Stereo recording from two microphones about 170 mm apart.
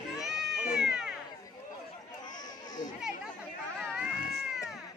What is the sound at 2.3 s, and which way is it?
Chatter, 25° left (ahead or behind).